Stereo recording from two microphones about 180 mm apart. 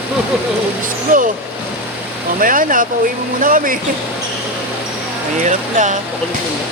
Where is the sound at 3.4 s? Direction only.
50° right (ahead or behind).